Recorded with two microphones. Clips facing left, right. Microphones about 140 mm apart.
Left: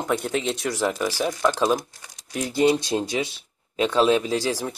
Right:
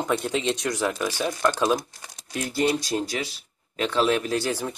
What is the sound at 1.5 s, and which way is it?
Speech, 5° right (ahead or behind).